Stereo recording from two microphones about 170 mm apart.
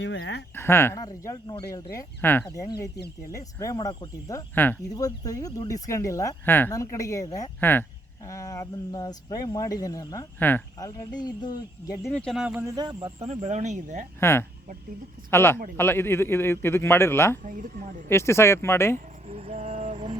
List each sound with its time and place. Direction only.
0.0 s speech: 90° left
0.5 s a man's voice: 15° left (ahead or behind)
12.1 s speech: centre (ahead or behind)
12.6 s speech: 25° right (ahead or behind)
13.1 s speech: 40° right (ahead or behind)
14.2 s a man's voice: 15° left (ahead or behind)
17.4 s speech: 50° right (ahead or behind)
18.1 s a man's voice: 15° left (ahead or behind)
18.9 s a sound: 40° right (ahead or behind)